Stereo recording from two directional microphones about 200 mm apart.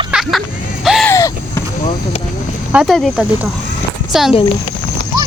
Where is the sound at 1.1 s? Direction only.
15° left (ahead or behind).